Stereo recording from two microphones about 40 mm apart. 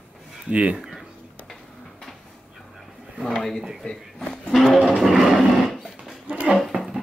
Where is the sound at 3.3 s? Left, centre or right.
Centre.